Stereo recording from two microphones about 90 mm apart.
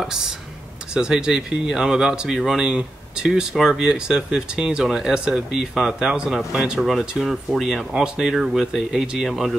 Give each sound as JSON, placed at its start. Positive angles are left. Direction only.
{"t": 0.0, "sound": "speech", "side_deg": -5}